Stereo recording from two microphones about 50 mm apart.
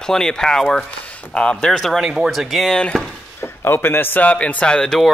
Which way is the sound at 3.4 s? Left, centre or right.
Left.